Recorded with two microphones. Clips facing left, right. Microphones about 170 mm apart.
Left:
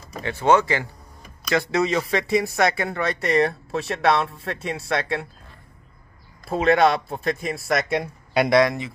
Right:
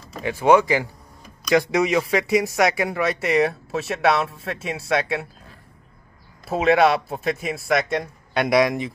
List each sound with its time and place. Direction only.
0.2 s speech: 10° right (ahead or behind)
6.4 s speech: 5° right (ahead or behind)
8.5 s speech: 15° right (ahead or behind)